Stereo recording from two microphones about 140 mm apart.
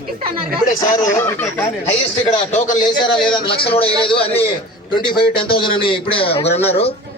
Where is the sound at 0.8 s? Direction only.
25° left (ahead or behind).